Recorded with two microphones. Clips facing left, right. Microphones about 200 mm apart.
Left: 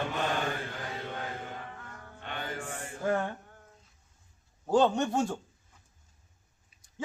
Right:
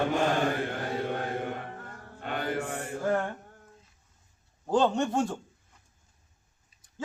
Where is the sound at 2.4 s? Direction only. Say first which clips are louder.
Right 7 dB; 65° right (ahead or behind).